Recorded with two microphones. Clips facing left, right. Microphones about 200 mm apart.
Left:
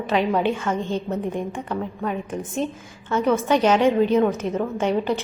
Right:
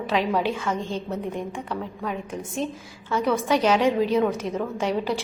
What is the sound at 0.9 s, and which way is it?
A woman's voice, 10° left (ahead or behind).